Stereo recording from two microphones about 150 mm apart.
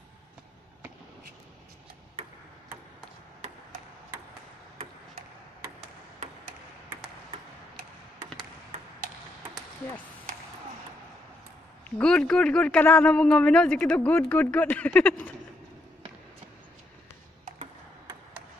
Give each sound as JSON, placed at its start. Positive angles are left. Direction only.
{"t": 8.7, "sound": "ping", "side_deg": -40}
{"t": 12.0, "sound": "speech", "side_deg": 5}